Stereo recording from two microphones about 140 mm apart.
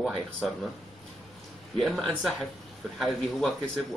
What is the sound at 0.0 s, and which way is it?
Speech, 5° left (ahead or behind).